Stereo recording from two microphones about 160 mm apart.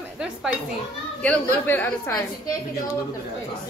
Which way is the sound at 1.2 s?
10° left (ahead or behind).